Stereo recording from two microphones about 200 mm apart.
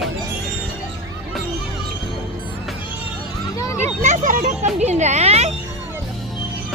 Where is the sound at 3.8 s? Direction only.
35° right (ahead or behind).